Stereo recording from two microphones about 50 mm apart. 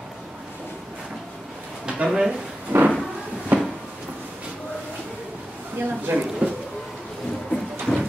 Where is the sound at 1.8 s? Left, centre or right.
Centre.